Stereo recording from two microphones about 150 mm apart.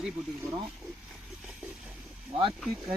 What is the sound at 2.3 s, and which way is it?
Speech, 35° right (ahead or behind).